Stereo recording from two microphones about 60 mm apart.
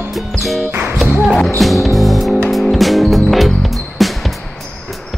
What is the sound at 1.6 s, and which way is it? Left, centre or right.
Music, centre.